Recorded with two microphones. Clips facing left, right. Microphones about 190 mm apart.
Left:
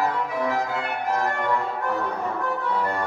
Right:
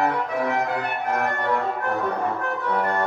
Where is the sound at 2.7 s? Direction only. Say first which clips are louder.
Right 4 dB; 60° right (ahead or behind).